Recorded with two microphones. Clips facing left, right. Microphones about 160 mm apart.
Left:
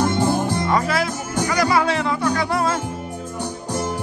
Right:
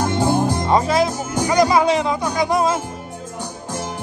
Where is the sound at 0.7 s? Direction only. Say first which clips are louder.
Right 4 dB; 20° right (ahead or behind).